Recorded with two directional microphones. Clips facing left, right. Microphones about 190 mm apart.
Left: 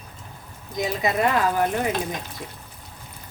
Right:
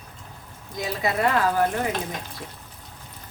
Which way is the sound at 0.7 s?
20° left (ahead or behind).